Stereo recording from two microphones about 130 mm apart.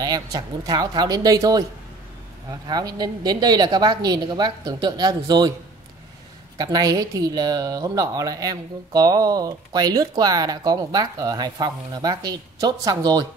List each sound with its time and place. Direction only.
0.0 s a woman's voice: 30° right (ahead or behind)
2.7 s a woman's voice: 30° right (ahead or behind)
6.6 s speech: 30° right (ahead or behind)